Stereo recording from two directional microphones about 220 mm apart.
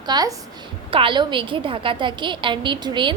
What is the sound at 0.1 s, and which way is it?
A woman's voice, 15° right (ahead or behind).